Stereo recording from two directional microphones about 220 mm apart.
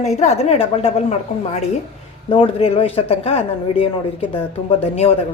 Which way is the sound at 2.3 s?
25° left (ahead or behind).